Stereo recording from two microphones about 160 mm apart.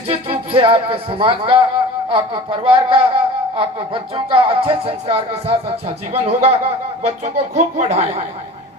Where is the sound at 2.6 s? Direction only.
35° right (ahead or behind).